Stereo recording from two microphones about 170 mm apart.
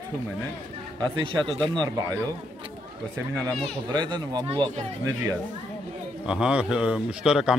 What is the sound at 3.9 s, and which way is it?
Speech, 25° right (ahead or behind).